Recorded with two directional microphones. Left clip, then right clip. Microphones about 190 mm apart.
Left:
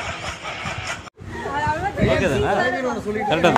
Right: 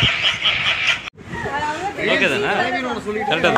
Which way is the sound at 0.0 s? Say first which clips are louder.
Right 12 dB; 10° left (ahead or behind).